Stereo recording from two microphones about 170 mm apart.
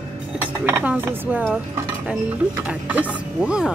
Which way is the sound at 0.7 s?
15° right (ahead or behind).